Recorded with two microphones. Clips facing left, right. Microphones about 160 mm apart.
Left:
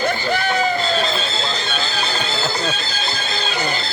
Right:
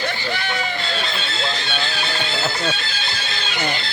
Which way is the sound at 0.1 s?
45° left (ahead or behind).